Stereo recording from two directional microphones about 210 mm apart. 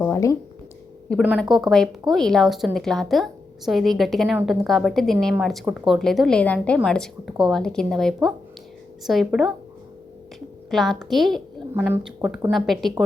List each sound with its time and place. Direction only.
0.0 s speech: 15° left (ahead or behind)
1.2 s a woman's voice: 5° right (ahead or behind)
10.7 s a woman's voice: centre (ahead or behind)